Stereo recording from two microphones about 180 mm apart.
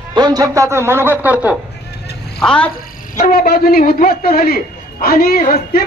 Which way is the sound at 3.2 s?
55° left (ahead or behind).